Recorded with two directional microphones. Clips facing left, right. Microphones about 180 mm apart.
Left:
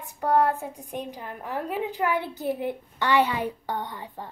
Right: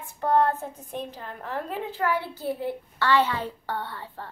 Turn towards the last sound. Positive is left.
turn(degrees=15)  # may be behind; listen again after turning